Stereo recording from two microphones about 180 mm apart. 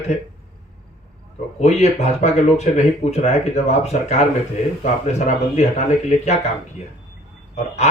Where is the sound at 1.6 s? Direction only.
40° left (ahead or behind).